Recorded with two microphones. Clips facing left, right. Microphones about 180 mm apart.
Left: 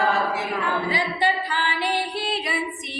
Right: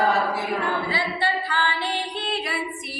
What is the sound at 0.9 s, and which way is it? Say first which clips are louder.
Singing: left 2 dB; 15° left (ahead or behind).